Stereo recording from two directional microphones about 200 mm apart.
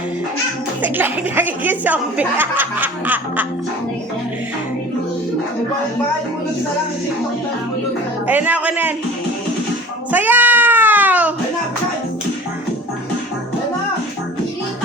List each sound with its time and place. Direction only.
0.8 s a woman's voice: 10° right (ahead or behind)
8.3 s a woman's voice: 10° right (ahead or behind)
10.1 s cat: 10° right (ahead or behind)